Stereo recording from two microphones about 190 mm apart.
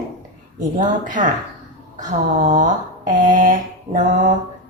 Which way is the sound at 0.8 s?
40° right (ahead or behind).